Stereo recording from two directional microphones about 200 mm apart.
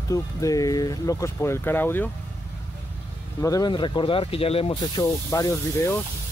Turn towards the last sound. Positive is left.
turn(degrees=15)  # may be behind; listen again after turning